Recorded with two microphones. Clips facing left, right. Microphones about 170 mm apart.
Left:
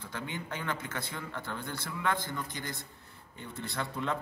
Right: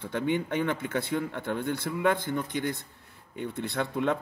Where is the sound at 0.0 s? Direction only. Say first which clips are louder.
Right 11 dB; 60° right (ahead or behind).